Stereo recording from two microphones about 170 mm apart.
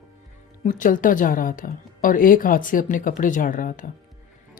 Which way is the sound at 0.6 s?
50° left (ahead or behind).